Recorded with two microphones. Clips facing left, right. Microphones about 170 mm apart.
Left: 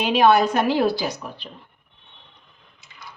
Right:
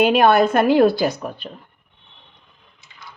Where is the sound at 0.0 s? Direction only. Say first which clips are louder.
Right 3 dB; 55° right (ahead or behind).